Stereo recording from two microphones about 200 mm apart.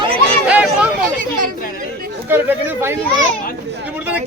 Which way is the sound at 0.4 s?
5° right (ahead or behind).